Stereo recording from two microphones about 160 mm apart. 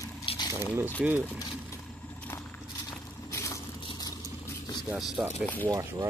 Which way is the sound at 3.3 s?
20° left (ahead or behind).